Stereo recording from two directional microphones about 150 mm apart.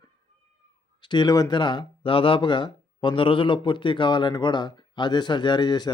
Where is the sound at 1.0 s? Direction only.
30° left (ahead or behind).